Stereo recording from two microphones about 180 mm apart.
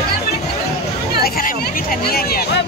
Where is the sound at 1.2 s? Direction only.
55° left (ahead or behind).